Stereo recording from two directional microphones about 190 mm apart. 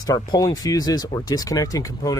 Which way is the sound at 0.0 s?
20° left (ahead or behind).